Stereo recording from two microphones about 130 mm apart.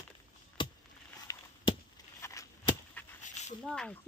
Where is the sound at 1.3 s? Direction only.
25° left (ahead or behind).